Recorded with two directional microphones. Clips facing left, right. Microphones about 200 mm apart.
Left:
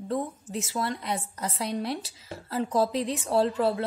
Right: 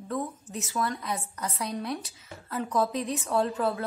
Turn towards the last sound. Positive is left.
turn(degrees=30)  # may be behind; listen again after turning